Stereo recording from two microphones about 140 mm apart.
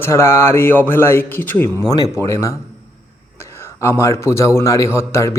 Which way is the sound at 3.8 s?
20° left (ahead or behind).